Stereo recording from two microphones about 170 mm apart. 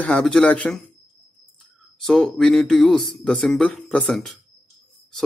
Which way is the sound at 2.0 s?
5° left (ahead or behind).